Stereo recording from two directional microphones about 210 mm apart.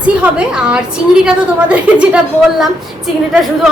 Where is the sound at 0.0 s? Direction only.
5° right (ahead or behind).